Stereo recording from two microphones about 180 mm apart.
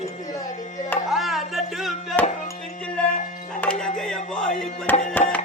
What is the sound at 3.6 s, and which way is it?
Music, 5° left (ahead or behind).